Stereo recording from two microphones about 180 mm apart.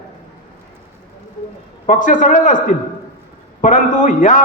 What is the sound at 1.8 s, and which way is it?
A man's voice, 45° left (ahead or behind).